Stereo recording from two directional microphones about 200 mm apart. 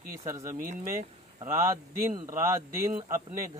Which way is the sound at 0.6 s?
45° right (ahead or behind).